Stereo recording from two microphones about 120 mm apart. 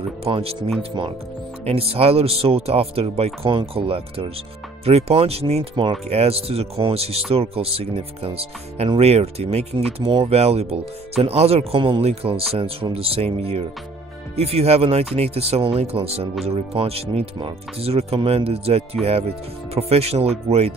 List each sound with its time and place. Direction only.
0.2 s speech: 55° right (ahead or behind)
1.7 s speech: 55° right (ahead or behind)
9.9 s speech: 50° right (ahead or behind)
10.4 s speech: 60° right (ahead or behind)